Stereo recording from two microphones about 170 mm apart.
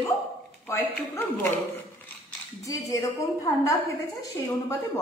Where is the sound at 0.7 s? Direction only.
10° left (ahead or behind).